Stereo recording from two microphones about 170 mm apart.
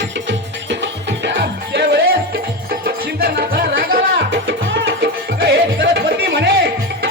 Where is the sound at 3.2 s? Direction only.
65° right (ahead or behind); by 6.4 s 80° right.